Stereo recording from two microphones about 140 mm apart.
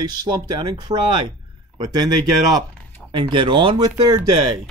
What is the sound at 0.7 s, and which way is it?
Speech, 30° right (ahead or behind).